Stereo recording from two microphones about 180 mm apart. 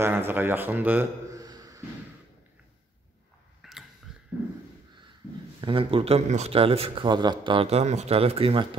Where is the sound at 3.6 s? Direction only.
Centre (ahead or behind).